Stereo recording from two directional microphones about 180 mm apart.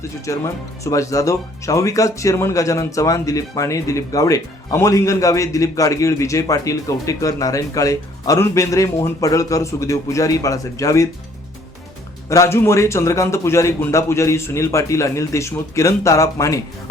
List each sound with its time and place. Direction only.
0.3 s speech: 15° left (ahead or behind)
12.3 s speech: 15° left (ahead or behind)